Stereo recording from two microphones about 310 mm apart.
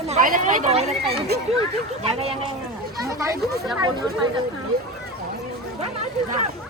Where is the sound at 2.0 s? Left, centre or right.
Centre.